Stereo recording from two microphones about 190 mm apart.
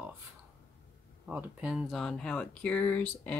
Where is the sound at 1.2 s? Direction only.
5° right (ahead or behind).